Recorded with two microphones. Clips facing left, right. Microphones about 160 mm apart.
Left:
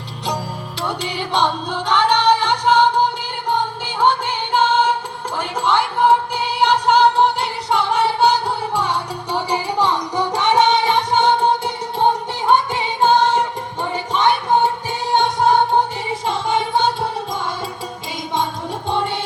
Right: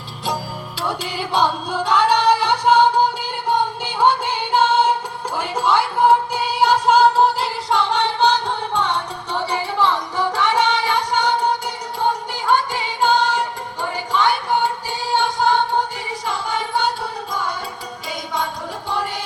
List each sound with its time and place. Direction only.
0.8 s music: 5° right (ahead or behind)
4.0 s music: 10° right (ahead or behind); by 16.8 s 25° left (ahead or behind)
18.9 s music: 25° left (ahead or behind)